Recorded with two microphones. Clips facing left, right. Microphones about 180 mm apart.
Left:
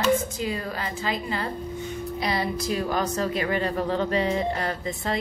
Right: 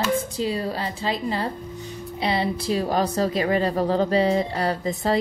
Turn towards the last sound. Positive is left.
turn(degrees=-35)  # may be behind; listen again after turning